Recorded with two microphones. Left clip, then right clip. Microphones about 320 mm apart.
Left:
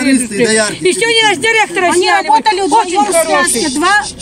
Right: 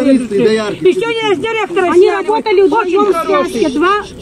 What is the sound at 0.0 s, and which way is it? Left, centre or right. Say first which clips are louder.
A man's voice: right 1 dB; left.